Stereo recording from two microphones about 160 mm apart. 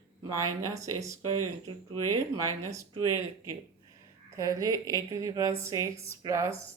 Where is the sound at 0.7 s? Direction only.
20° right (ahead or behind).